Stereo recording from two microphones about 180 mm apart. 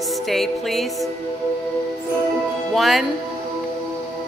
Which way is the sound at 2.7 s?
Centre (ahead or behind).